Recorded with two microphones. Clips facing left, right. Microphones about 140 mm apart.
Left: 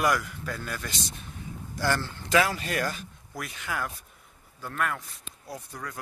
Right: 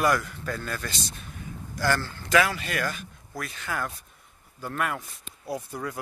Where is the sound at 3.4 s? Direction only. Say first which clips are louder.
Right 1 dB; 10° left (ahead or behind).